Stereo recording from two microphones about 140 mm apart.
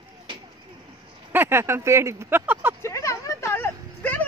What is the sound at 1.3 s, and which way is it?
Speech, 15° right (ahead or behind).